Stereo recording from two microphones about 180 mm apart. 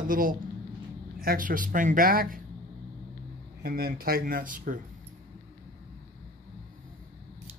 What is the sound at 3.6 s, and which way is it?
Speech, 55° right (ahead or behind).